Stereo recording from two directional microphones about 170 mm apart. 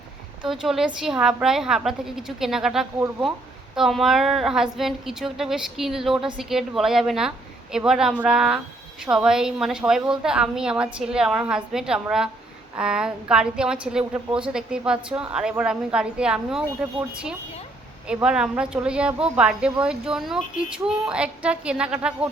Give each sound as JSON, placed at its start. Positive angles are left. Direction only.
{"t": 0.4, "sound": "a woman's voice", "side_deg": 0}